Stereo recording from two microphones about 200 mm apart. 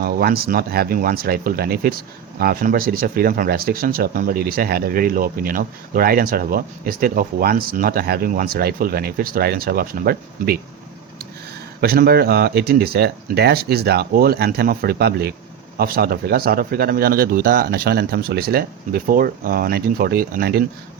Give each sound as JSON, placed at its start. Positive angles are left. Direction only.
{"t": 0.0, "sound": "speech", "side_deg": -50}
{"t": 11.8, "sound": "speech", "side_deg": -50}